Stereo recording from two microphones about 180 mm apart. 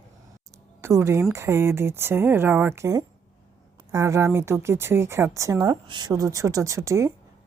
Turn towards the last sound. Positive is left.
turn(degrees=-15)  # may be behind; listen again after turning